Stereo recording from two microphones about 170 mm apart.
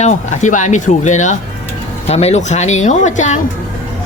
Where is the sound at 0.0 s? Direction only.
45° left (ahead or behind).